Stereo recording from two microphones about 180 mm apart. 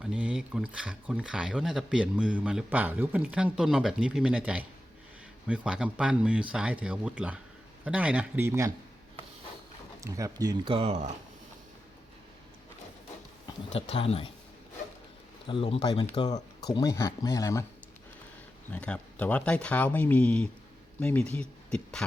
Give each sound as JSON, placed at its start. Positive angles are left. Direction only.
{"t": 0.0, "sound": "speech", "side_deg": -5}
{"t": 10.0, "sound": "speech", "side_deg": -20}
{"t": 13.7, "sound": "speech", "side_deg": 35}
{"t": 15.4, "sound": "speech", "side_deg": 30}
{"t": 18.7, "sound": "speech", "side_deg": 5}